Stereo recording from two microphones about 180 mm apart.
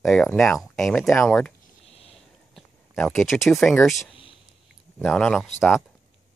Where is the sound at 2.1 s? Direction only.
Centre (ahead or behind).